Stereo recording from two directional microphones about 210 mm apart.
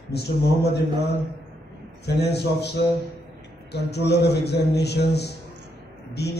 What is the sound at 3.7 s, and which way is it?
A man's voice, 50° left (ahead or behind).